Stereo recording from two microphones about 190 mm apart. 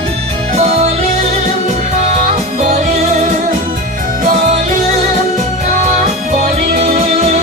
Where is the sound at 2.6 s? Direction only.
40° right (ahead or behind).